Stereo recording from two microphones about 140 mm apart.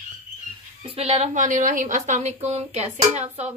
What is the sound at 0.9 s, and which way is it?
Speech, 45° right (ahead or behind).